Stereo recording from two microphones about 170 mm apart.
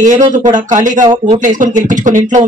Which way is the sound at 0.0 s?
45° right (ahead or behind).